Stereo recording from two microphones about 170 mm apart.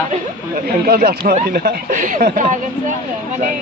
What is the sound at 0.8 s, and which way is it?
Speech, 60° right (ahead or behind).